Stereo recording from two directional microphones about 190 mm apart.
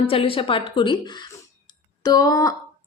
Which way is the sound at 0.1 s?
30° left (ahead or behind).